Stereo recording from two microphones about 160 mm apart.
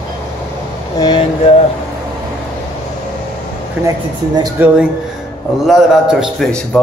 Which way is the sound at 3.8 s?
25° right (ahead or behind).